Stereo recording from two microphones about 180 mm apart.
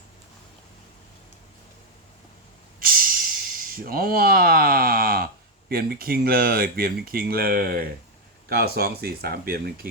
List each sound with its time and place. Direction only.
2.8 s speech: 55° right (ahead or behind)